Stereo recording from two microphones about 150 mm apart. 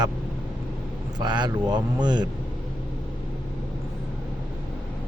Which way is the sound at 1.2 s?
30° right (ahead or behind).